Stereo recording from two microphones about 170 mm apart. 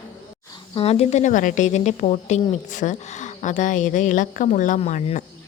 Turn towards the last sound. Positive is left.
turn(degrees=45)  # may be behind; listen again after turning